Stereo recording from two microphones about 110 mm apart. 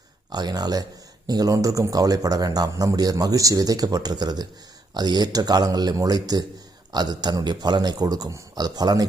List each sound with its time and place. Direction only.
0.3 s a man's voice: 40° right (ahead or behind)